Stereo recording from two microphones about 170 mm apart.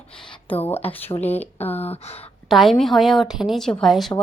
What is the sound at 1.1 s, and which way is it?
Speech, 25° left (ahead or behind).